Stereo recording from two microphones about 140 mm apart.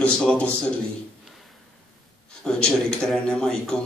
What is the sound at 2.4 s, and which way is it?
A man's voice, 5° left (ahead or behind).